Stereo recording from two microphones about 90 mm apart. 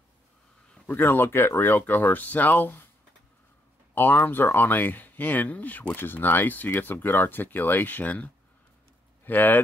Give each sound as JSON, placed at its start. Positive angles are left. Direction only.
{"t": 0.8, "sound": "speech", "side_deg": 20}
{"t": 3.9, "sound": "speech", "side_deg": 20}